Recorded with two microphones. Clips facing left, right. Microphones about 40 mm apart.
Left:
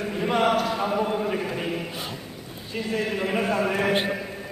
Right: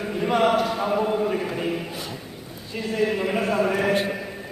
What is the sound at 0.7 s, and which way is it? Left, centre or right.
Chant, centre.